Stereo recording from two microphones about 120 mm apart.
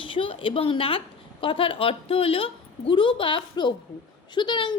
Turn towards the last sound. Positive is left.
turn(degrees=40)  # may be behind; listen again after turning